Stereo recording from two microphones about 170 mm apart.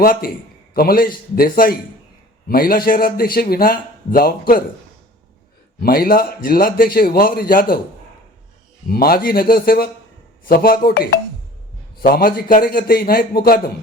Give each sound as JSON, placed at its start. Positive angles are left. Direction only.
{"t": 0.0, "sound": "a man's voice", "side_deg": 60}
{"t": 5.8, "sound": "a man's voice", "side_deg": 60}
{"t": 8.9, "sound": "a man's voice", "side_deg": 60}